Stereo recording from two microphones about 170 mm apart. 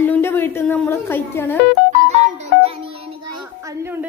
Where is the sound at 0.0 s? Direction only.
15° left (ahead or behind).